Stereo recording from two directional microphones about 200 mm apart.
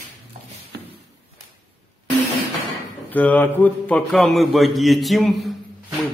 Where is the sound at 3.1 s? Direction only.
10° left (ahead or behind).